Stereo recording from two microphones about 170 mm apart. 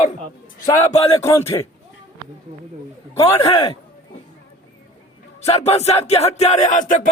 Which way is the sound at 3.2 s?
30° left (ahead or behind).